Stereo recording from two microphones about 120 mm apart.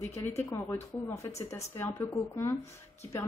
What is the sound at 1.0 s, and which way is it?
Speech, 25° left (ahead or behind).